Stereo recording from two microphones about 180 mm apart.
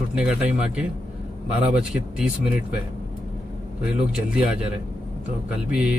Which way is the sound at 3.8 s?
5° right (ahead or behind).